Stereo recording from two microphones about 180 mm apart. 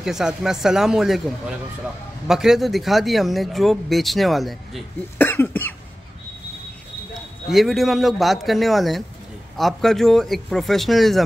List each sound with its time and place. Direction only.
0.0 s speech: 5° right (ahead or behind)
5.2 s cough: 10° left (ahead or behind)
7.5 s speech: centre (ahead or behind)